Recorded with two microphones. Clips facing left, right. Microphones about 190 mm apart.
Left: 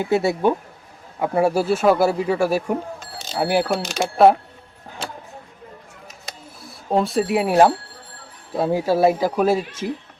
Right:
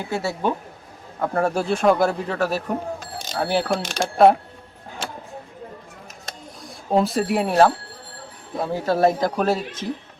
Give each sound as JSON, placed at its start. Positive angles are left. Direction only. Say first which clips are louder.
{"t": 0.0, "sound": "speech", "louder": "left 6 dB", "side_deg": 20}
{"t": 6.2, "sound": "a sound", "louder": "right 2 dB", "side_deg": 0}
{"t": 8.7, "sound": "speech", "louder": "left 1 dB", "side_deg": 10}